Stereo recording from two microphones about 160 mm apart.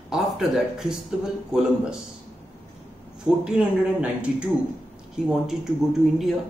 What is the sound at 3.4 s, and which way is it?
Speech, 5° right (ahead or behind).